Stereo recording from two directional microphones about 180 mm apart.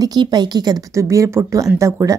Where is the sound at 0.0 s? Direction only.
20° right (ahead or behind).